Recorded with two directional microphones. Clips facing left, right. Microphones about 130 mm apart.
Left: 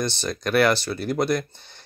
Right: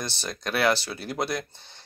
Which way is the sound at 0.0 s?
5° right (ahead or behind).